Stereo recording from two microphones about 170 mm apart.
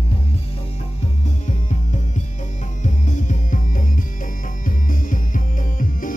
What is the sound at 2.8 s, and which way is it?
Music, 45° left (ahead or behind).